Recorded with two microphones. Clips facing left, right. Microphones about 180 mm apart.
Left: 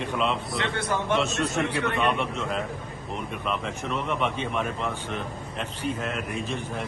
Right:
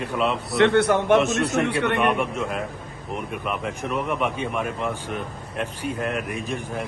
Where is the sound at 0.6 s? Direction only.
65° right (ahead or behind).